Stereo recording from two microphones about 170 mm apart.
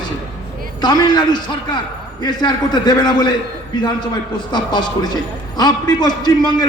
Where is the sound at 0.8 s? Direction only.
25° left (ahead or behind).